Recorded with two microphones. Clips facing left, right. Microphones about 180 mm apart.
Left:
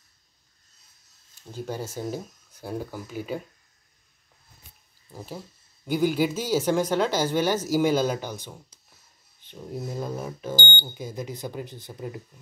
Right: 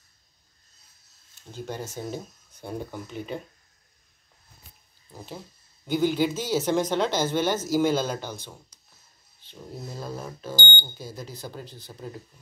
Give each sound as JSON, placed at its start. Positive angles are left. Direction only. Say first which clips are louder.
{"t": 1.5, "sound": "speech", "louder": "left 2 dB", "side_deg": 10}
{"t": 5.1, "sound": "speech", "louder": "left 2 dB", "side_deg": 10}